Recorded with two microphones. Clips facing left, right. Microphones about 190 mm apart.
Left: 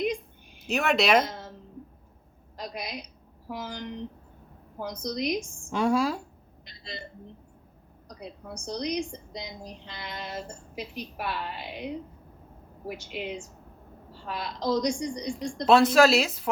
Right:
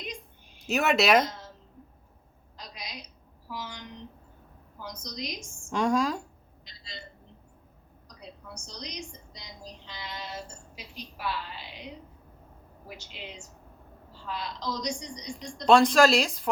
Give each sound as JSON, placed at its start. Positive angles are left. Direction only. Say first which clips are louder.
{"t": 0.6, "sound": "speech", "louder": "even", "side_deg": 0}
{"t": 2.6, "sound": "speech", "louder": "left 7 dB", "side_deg": 55}
{"t": 5.7, "sound": "a woman's voice", "louder": "left 1 dB", "side_deg": 5}
{"t": 6.7, "sound": "a woman's voice", "louder": "left 5 dB", "side_deg": 60}
{"t": 8.0, "sound": "a sound", "louder": "left 5 dB", "side_deg": 55}
{"t": 8.6, "sound": "speech", "louder": "left 12 dB", "side_deg": 55}
{"t": 12.9, "sound": "speech", "louder": "left 9 dB", "side_deg": 55}
{"t": 15.6, "sound": "speech", "louder": "left 1 dB", "side_deg": 5}